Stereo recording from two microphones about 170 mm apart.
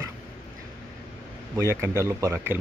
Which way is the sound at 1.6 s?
15° right (ahead or behind).